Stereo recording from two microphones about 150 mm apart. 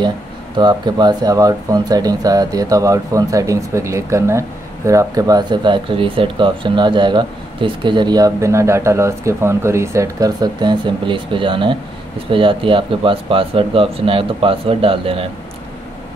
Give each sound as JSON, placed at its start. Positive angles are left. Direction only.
{"t": 0.6, "sound": "speech", "side_deg": -30}